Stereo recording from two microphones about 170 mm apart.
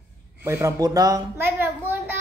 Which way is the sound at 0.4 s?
15° right (ahead or behind).